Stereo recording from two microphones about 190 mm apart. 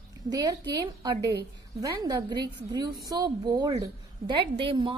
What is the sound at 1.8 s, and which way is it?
A woman's voice, 20° right (ahead or behind).